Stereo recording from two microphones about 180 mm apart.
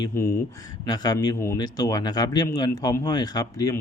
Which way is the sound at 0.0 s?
15° left (ahead or behind).